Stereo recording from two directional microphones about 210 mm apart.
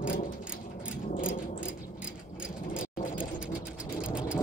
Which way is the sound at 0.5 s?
40° left (ahead or behind).